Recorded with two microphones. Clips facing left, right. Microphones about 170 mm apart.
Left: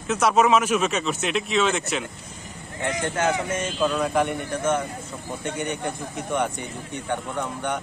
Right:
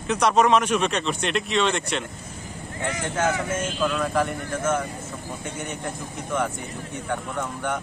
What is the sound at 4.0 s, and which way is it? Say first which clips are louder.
Speech: left 1 dB; centre (ahead or behind).